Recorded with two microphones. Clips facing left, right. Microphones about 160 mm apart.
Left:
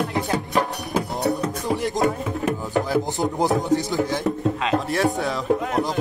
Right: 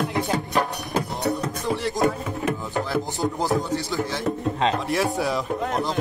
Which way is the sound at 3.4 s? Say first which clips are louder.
Left 6 dB; 20° left (ahead or behind).